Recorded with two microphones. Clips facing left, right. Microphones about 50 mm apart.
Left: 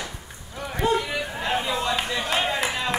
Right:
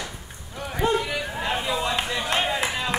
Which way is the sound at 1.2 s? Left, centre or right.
Centre.